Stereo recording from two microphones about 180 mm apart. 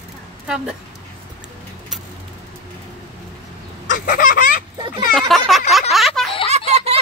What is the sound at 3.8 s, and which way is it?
Fowl, 50° left (ahead or behind).